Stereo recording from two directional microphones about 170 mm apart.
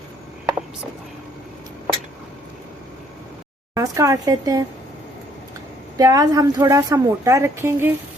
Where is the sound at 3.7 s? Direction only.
20° right (ahead or behind).